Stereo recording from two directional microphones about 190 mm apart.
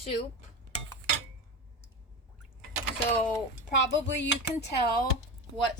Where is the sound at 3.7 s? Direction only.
65° left (ahead or behind).